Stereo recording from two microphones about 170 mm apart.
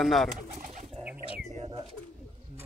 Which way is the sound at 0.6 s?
50° right (ahead or behind).